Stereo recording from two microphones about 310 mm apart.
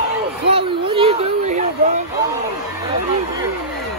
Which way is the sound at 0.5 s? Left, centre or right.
Centre.